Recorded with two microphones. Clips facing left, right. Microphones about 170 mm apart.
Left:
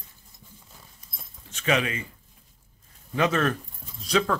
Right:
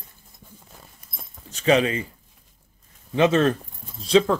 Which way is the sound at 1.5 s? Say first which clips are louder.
Right 6 dB; 30° right (ahead or behind).